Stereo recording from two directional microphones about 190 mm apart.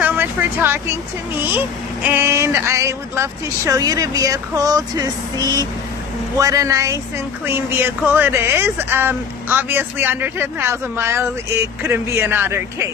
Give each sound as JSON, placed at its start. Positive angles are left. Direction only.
{"t": 0.0, "sound": "speech", "side_deg": -10}